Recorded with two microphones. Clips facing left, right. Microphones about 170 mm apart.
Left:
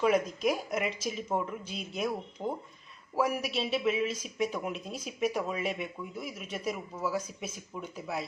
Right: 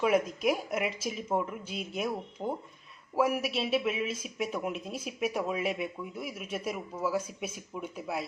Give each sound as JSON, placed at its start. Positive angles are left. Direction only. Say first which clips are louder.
{"t": 0.0, "sound": "speech", "louder": "even", "side_deg": -5}